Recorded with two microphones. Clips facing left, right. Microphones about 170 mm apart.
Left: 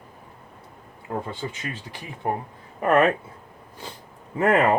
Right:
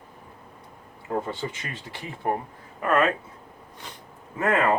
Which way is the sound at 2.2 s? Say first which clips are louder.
Even; 20° left (ahead or behind).